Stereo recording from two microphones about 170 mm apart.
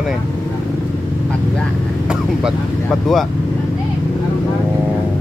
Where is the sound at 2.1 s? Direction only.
5° right (ahead or behind).